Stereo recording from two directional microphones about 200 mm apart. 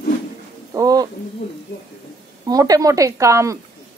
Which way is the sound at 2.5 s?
20° right (ahead or behind).